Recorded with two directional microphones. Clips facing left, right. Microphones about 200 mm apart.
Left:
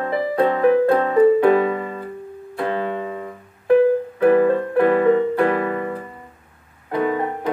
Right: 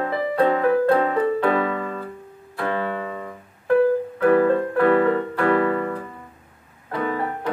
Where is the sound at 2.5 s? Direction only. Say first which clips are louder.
Left 2 dB; 20° left (ahead or behind).